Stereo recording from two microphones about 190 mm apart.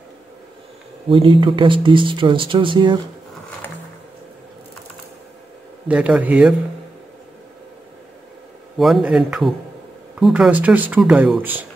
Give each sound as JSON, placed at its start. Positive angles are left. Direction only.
{"t": 1.0, "sound": "speech", "side_deg": -25}
{"t": 5.9, "sound": "speech", "side_deg": -5}
{"t": 8.7, "sound": "a man's voice", "side_deg": 0}